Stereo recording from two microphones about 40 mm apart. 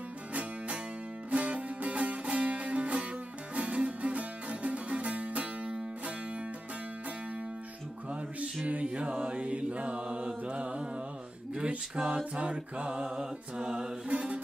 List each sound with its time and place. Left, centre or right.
0.3 s music: right
8.6 s mantra: right
14.0 s mantra: right